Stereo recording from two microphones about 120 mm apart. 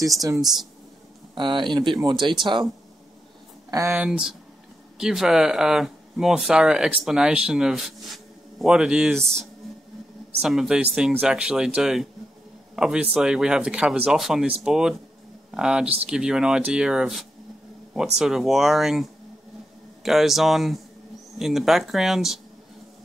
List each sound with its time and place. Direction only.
1.3 s speech: 40° right (ahead or behind)
3.9 s speech: 10° right (ahead or behind)
10.4 s speech: 5° right (ahead or behind)